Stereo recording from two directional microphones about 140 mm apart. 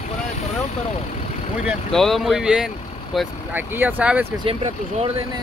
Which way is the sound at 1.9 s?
Centre (ahead or behind).